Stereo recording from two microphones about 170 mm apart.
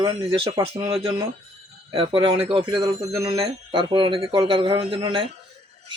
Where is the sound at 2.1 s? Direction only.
30° right (ahead or behind).